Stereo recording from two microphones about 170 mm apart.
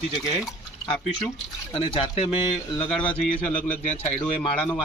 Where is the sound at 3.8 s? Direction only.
45° left (ahead or behind).